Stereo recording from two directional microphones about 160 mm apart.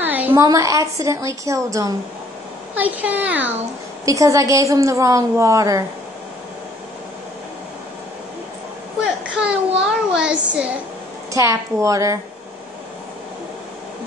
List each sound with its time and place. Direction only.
0.0 s a sound: 10° right (ahead or behind)
0.4 s a woman's voice: 20° right (ahead or behind)
2.7 s a woman's voice: 10° right (ahead or behind)
9.4 s child singing: 5° right (ahead or behind)
11.3 s a woman's voice: 20° right (ahead or behind)